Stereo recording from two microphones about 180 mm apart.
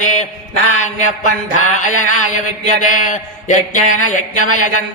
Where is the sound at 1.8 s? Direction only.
45° left (ahead or behind).